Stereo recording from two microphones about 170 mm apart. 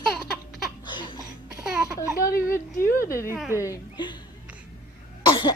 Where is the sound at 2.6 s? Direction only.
15° left (ahead or behind).